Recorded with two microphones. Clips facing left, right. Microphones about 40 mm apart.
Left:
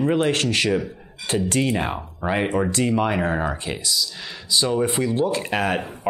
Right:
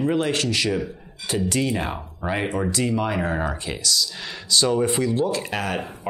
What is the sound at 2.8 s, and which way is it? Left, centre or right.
Speech, left.